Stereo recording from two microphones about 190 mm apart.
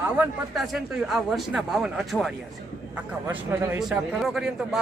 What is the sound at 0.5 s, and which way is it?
A man's voice, centre (ahead or behind).